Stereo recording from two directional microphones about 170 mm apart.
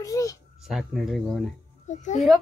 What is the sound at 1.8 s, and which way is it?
Speech, 45° left (ahead or behind).